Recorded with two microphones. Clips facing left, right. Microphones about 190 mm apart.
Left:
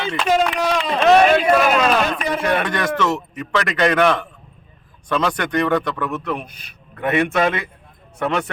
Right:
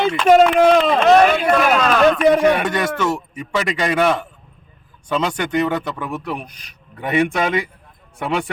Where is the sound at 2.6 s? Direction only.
5° right (ahead or behind).